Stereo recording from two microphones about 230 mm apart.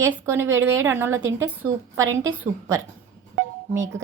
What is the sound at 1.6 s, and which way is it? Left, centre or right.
Speech, right.